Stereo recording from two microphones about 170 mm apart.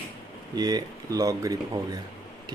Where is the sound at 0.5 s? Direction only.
25° right (ahead or behind).